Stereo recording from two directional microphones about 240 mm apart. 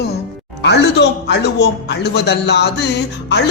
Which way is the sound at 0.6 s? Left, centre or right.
Left.